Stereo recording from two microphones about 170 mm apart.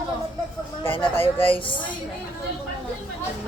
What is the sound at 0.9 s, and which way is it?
Speech, 30° left (ahead or behind).